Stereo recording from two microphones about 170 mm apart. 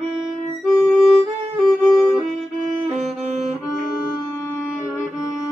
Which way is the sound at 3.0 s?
40° right (ahead or behind).